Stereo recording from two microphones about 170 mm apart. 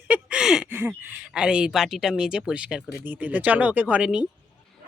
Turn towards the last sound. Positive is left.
turn(degrees=-5)  # may be behind; listen again after turning